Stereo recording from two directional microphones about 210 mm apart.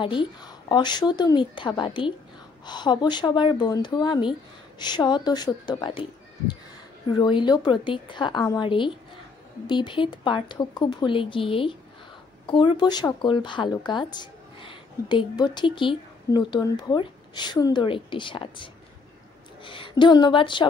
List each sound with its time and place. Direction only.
0.0 s speech: 25° left (ahead or behind)
7.1 s speech: 20° left (ahead or behind)